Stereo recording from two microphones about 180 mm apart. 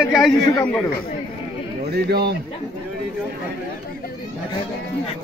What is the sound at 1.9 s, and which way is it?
Speech, 60° right (ahead or behind).